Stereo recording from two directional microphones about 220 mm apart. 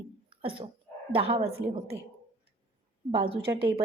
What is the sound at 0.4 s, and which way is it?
Speech, 25° right (ahead or behind).